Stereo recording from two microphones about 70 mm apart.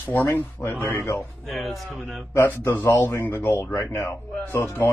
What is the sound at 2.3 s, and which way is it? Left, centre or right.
Speech, left.